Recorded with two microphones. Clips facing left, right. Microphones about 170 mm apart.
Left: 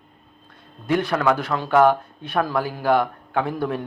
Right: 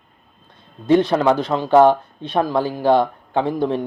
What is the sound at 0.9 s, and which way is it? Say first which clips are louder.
Speech: right 5 dB; 20° right (ahead or behind).